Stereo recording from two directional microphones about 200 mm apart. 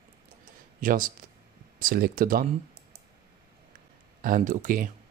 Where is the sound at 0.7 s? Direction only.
45° right (ahead or behind).